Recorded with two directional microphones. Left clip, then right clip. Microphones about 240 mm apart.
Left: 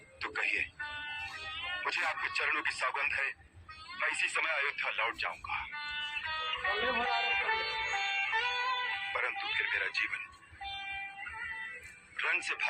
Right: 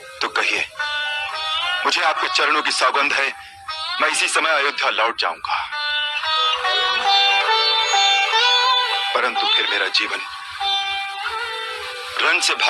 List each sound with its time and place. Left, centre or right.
1.5 s speech: right
4.0 s music: right
12.1 s speech: right